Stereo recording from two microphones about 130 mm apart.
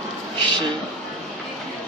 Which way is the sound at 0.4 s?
35° right (ahead or behind).